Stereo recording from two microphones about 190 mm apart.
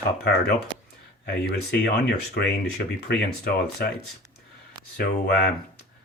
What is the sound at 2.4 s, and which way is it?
Speech, 55° left (ahead or behind).